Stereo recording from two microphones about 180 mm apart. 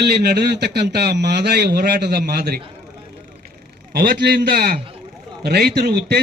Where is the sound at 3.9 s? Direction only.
60° right (ahead or behind).